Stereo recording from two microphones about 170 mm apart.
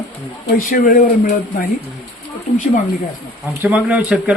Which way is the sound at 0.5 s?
55° left (ahead or behind).